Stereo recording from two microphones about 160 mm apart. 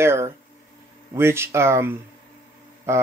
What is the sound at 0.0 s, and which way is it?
Speech, 15° right (ahead or behind).